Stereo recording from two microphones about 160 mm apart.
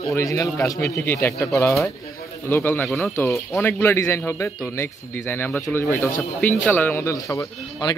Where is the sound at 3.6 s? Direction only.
15° left (ahead or behind).